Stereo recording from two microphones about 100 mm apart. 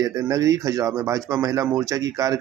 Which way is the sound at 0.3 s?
35° right (ahead or behind).